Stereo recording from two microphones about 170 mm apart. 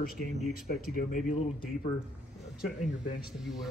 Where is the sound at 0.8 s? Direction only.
55° left (ahead or behind).